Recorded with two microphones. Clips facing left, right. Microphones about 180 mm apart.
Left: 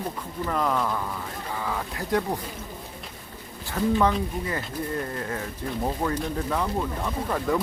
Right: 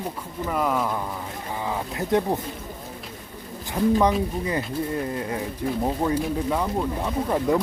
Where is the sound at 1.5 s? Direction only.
20° right (ahead or behind).